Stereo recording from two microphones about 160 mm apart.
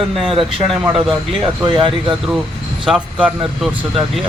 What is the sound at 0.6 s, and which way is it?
Speech, centre (ahead or behind).